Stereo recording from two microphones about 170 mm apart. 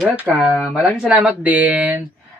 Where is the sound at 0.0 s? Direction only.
5° right (ahead or behind).